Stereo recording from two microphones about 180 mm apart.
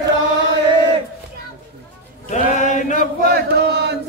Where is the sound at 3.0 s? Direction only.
60° right (ahead or behind).